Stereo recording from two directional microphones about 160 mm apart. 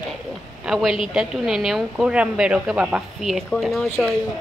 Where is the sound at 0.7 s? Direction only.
Centre (ahead or behind).